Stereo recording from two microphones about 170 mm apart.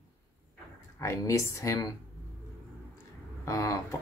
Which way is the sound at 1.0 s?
20° left (ahead or behind).